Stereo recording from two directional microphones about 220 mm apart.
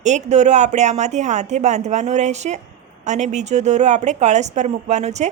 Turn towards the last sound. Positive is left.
turn(degrees=-30)  # may be behind; listen again after turning